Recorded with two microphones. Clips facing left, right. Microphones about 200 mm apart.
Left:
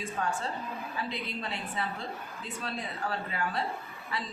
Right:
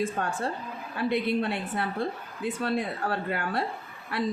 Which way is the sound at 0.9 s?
65° right (ahead or behind).